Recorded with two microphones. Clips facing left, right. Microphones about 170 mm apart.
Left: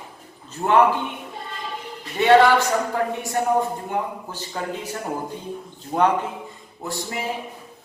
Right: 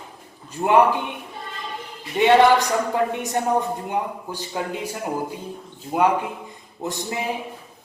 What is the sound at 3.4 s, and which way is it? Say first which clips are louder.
Speech: left 1 dB; 20° right (ahead or behind).